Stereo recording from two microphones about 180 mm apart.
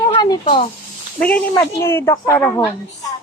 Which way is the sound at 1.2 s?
10° left (ahead or behind).